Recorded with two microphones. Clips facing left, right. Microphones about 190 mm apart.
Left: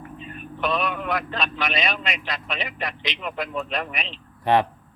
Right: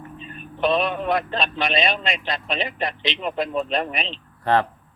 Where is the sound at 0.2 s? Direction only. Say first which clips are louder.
Right 5 dB; 30° right (ahead or behind).